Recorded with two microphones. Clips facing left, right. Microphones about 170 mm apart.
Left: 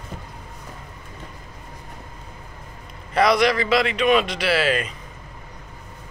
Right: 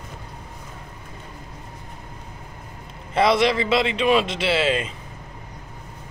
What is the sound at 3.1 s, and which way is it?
Speech, 25° right (ahead or behind).